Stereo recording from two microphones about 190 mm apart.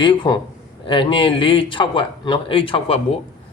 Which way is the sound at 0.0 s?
25° left (ahead or behind).